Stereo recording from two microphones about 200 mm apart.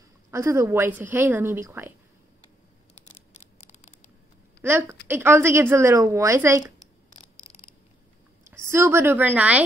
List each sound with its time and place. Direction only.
0.3 s a woman's voice: 15° right (ahead or behind)
2.9 s a sound: 35° left (ahead or behind)
4.6 s a woman's voice: 10° right (ahead or behind)
8.5 s a woman's voice: 15° right (ahead or behind)